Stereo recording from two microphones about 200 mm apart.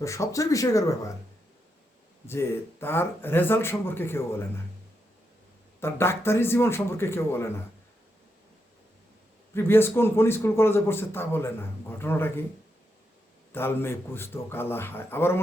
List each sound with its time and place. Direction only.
0.0 s a man's voice: 15° left (ahead or behind)
2.2 s a man's voice: 10° left (ahead or behind)
5.8 s a man's voice: 10° left (ahead or behind)
9.6 s a man's voice: 10° left (ahead or behind)
13.5 s a man's voice: 10° left (ahead or behind)